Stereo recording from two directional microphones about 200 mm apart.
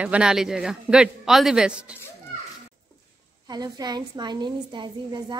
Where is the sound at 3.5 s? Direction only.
20° right (ahead or behind).